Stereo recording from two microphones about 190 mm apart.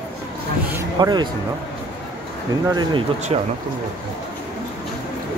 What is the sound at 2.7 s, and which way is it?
Speech, 25° right (ahead or behind).